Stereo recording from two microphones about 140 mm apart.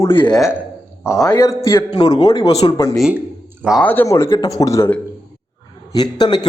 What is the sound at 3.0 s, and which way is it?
Speech, 5° right (ahead or behind).